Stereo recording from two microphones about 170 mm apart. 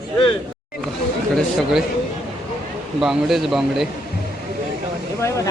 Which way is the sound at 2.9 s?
Centre (ahead or behind).